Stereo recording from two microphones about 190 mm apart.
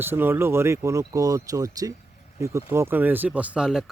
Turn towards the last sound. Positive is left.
turn(degrees=-5)  # may be behind; listen again after turning